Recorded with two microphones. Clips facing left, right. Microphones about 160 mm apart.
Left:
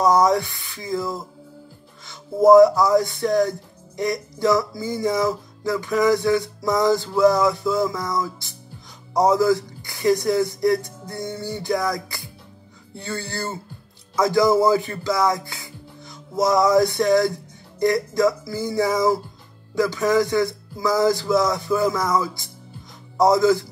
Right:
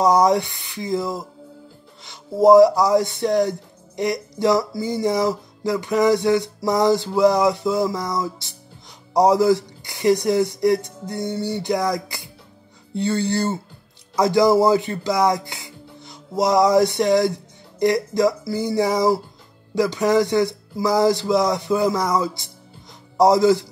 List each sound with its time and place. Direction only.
0.0 s speech: 20° right (ahead or behind)
14.6 s music: 20° right (ahead or behind)
17.7 s speech: 20° right (ahead or behind)